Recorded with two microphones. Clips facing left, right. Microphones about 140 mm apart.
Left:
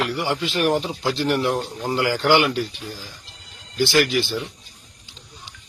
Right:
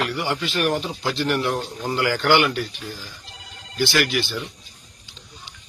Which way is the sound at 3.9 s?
35° left (ahead or behind).